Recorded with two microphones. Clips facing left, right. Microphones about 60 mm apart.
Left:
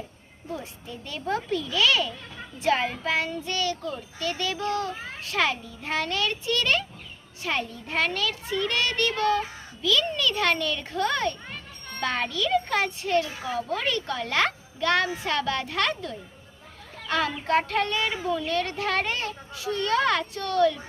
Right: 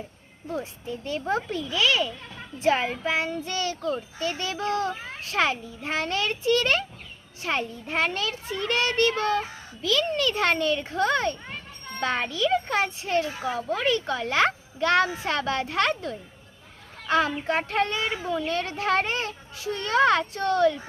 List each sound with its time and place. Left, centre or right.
0.6 s a child's voice: right
3.4 s speech: right
6.1 s speech: right
7.4 s a child's voice: right
11.9 s a child's voice: centre
13.1 s speech: right
13.5 s a child's voice: centre
14.8 s speech: right
17.1 s a child's voice: centre
17.7 s speech: right